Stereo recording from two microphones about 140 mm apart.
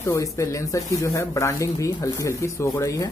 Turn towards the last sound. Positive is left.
turn(degrees=25)  # may be behind; listen again after turning